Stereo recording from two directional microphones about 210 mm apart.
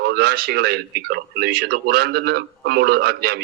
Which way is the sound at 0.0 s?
50° right (ahead or behind).